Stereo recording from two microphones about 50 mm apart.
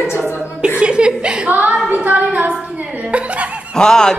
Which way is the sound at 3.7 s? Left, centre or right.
Centre.